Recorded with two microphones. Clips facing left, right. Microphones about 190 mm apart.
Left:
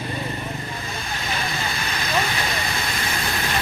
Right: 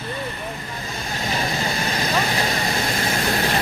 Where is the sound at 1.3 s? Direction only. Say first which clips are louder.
Right 4 dB; 40° right (ahead or behind).